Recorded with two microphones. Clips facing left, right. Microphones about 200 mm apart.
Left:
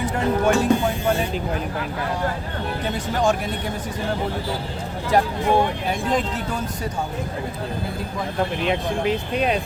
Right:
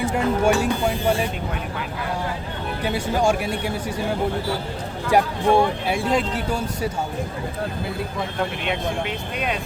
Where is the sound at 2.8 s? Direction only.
10° right (ahead or behind).